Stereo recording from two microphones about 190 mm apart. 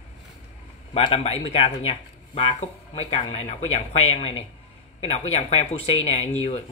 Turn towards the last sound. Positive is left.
turn(degrees=30)  # may be behind; listen again after turning